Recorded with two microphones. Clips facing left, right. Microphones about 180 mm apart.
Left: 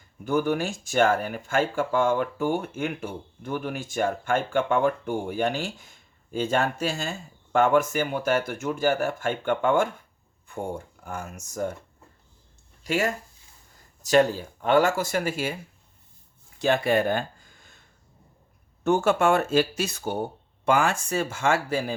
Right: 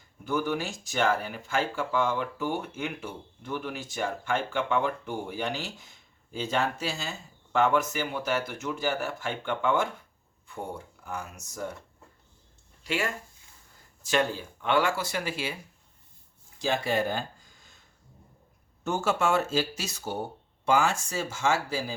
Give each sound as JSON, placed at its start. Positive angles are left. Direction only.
{"t": 0.3, "sound": "speech", "side_deg": 50}
{"t": 12.8, "sound": "speech", "side_deg": 40}
{"t": 16.6, "sound": "speech", "side_deg": 60}
{"t": 18.8, "sound": "speech", "side_deg": 55}